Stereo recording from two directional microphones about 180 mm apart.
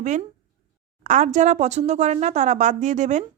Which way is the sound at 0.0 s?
40° right (ahead or behind).